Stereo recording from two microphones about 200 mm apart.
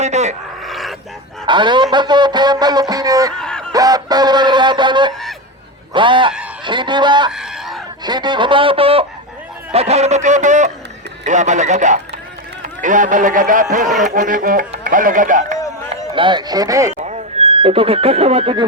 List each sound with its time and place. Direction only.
0.0 s speech: 35° right (ahead or behind)
0.6 s a sound: centre (ahead or behind)
1.5 s speech: 25° right (ahead or behind)
3.3 s honk: 5° left (ahead or behind)
3.7 s speech: 20° right (ahead or behind)
7.3 s chicken: 5° right (ahead or behind)
8.0 s speech: 20° right (ahead or behind); by 15.5 s 40° right (ahead or behind)
16.1 s speech: 25° right (ahead or behind)
17.0 s speech: 35° right (ahead or behind)